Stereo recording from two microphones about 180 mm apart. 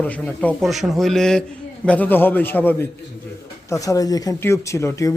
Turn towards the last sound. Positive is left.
turn(degrees=15)  # may be behind; listen again after turning